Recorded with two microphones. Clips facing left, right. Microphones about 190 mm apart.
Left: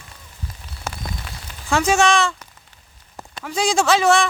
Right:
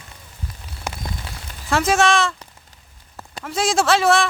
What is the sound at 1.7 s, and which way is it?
Speech, centre (ahead or behind).